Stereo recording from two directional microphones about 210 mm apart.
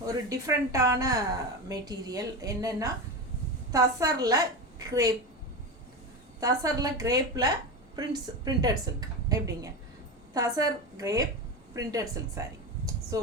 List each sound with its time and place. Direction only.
0.0 s a woman's voice: 15° right (ahead or behind)
6.4 s a woman's voice: 15° right (ahead or behind)